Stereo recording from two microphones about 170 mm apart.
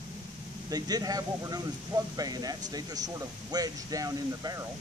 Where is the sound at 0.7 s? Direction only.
20° right (ahead or behind).